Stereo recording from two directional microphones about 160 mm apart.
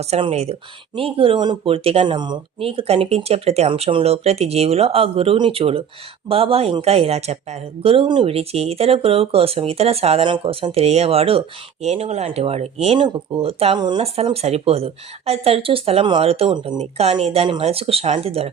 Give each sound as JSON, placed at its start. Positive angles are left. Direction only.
{"t": 0.0, "sound": "speech", "side_deg": -40}